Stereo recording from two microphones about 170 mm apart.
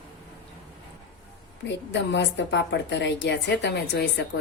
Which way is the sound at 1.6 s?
90° left.